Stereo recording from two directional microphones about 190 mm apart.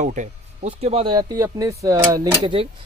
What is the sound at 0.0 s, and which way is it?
Speech, 40° right (ahead or behind).